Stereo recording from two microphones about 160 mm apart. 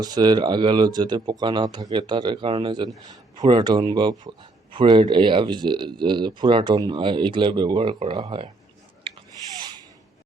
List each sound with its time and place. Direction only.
0.0 s speech: 25° right (ahead or behind)